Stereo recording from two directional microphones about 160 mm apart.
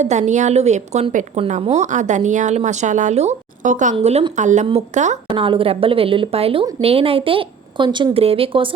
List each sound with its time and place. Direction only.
0.0 s a woman's voice: 45° right (ahead or behind)
3.9 s a woman's voice: 35° right (ahead or behind)